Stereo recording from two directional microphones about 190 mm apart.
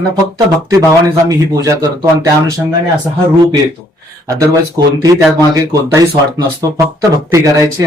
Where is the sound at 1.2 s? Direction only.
20° right (ahead or behind).